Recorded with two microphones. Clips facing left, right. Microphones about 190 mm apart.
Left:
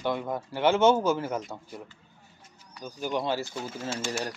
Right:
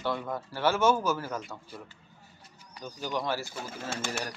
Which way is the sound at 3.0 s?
20° left (ahead or behind).